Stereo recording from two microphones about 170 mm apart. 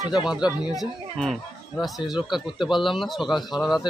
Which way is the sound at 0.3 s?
5° right (ahead or behind).